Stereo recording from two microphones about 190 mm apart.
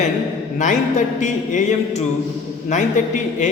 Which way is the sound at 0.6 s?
40° left (ahead or behind).